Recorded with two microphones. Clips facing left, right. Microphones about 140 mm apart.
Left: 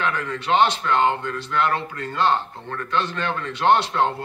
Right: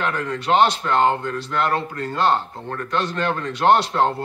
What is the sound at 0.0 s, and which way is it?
Speech, 40° right (ahead or behind).